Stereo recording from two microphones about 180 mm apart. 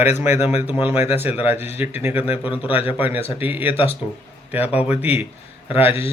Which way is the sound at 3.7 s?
30° left (ahead or behind).